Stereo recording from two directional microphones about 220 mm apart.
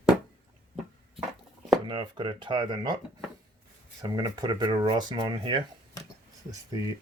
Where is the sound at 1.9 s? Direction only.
20° right (ahead or behind).